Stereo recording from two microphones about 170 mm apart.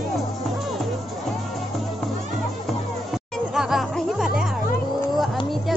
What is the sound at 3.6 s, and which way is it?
Music, centre (ahead or behind).